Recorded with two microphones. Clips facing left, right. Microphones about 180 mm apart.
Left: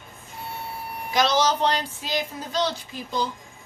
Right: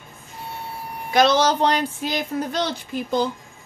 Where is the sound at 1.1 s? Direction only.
55° right (ahead or behind).